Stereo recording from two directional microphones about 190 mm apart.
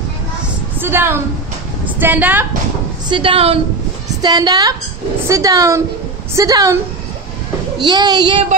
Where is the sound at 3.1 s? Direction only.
30° right (ahead or behind).